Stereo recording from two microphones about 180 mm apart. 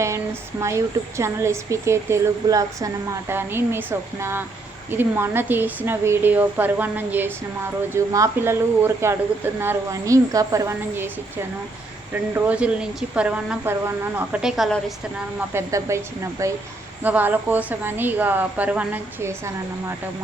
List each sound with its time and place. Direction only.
0.6 s speech: 15° right (ahead or behind)
12.1 s speech: 10° right (ahead or behind)
14.4 s a woman's voice: centre (ahead or behind)
15.4 s speech: 15° right (ahead or behind)